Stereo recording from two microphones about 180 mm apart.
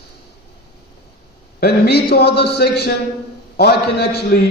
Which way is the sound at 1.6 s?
65° left (ahead or behind).